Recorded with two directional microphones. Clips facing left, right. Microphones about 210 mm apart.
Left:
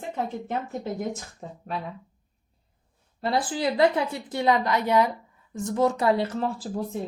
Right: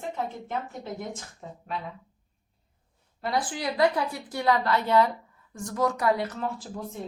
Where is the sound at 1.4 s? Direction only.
40° left (ahead or behind).